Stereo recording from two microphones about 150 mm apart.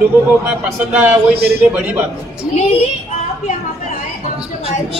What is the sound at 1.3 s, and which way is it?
Speech, 90° right.